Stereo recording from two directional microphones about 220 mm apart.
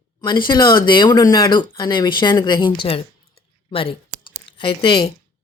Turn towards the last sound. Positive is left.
turn(degrees=20)  # may be behind; listen again after turning